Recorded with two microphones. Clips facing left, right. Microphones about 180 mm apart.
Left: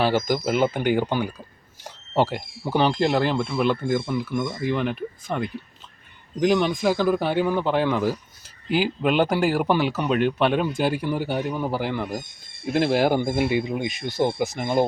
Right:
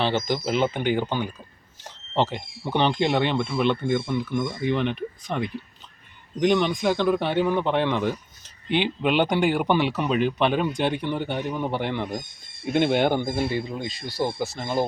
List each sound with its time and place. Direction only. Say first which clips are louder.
0.0 s speech: left 3 dB; 5° left (ahead or behind)